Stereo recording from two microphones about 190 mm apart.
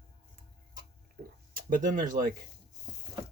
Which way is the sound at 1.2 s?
50° right (ahead or behind).